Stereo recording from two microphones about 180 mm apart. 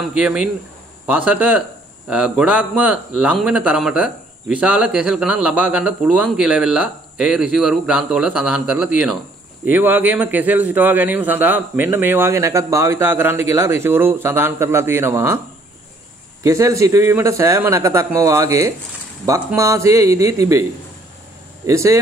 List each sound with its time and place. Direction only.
0.1 s a man's voice: 5° right (ahead or behind)
16.4 s a man's voice: 15° right (ahead or behind)
21.6 s a man's voice: 15° right (ahead or behind)